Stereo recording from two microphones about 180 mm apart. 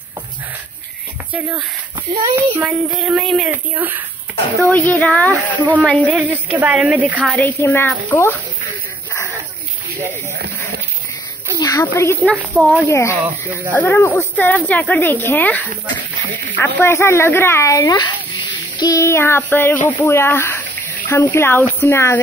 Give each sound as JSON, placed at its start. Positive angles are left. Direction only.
{"t": 1.3, "sound": "speech", "side_deg": -10}
{"t": 2.6, "sound": "speech", "side_deg": -5}
{"t": 4.6, "sound": "speech", "side_deg": 10}
{"t": 6.1, "sound": "speech", "side_deg": -10}
{"t": 7.3, "sound": "speech", "side_deg": 10}
{"t": 11.5, "sound": "speech", "side_deg": 20}
{"t": 12.3, "sound": "speech", "side_deg": 5}
{"t": 12.9, "sound": "speech", "side_deg": 15}